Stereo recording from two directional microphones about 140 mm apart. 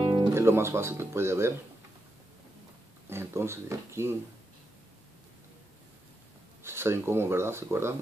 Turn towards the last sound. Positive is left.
turn(degrees=-20)  # may be behind; listen again after turning